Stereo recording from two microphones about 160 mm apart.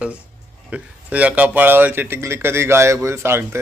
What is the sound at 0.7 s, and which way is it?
A man's voice, 10° right (ahead or behind).